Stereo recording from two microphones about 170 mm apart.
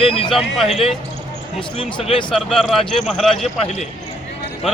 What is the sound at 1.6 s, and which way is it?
Speech, 30° left (ahead or behind).